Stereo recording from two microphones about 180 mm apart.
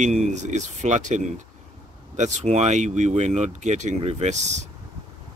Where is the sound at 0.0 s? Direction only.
40° right (ahead or behind).